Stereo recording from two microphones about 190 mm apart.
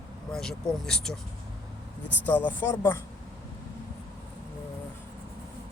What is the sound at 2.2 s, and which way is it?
Speech, 10° left (ahead or behind).